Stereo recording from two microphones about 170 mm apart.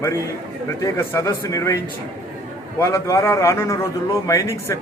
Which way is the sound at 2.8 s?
15° left (ahead or behind).